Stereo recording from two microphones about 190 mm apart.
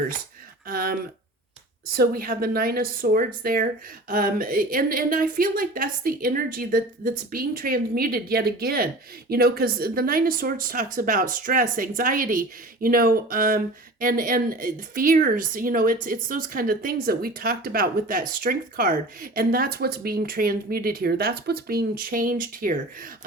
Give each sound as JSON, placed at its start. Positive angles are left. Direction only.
{"t": 0.7, "sound": "speech", "side_deg": -50}